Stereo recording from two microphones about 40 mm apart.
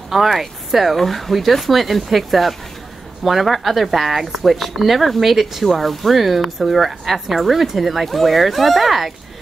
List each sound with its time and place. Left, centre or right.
0.1 s speech: centre